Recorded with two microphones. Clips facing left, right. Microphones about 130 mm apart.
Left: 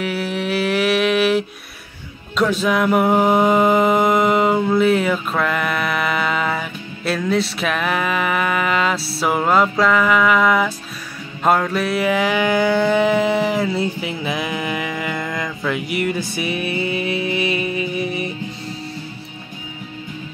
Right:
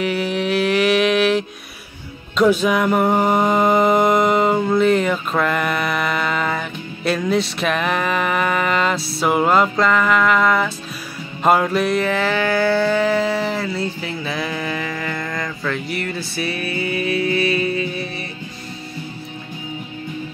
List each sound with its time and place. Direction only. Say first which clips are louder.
0.0 s mantra: right 2 dB; 5° left (ahead or behind)
2.6 s mantra: even; centre (ahead or behind)
7.1 s music: right 1 dB; centre (ahead or behind)
11.4 s music: right 1 dB; 5° right (ahead or behind); by 18.3 s 15° left (ahead or behind)